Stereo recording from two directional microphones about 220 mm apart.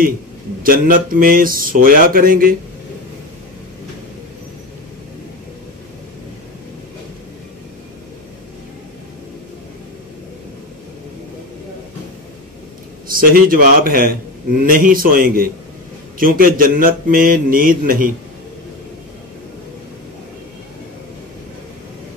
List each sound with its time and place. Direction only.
0.7 s speech: 40° right (ahead or behind)
13.1 s speech: 40° right (ahead or behind)